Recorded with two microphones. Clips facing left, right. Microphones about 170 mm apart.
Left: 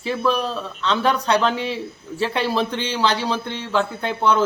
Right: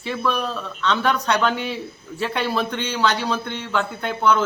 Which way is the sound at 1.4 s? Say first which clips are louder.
Left 1 dB; 30° left (ahead or behind).